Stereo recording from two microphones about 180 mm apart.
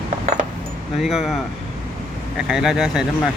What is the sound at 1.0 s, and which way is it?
Speech, centre (ahead or behind).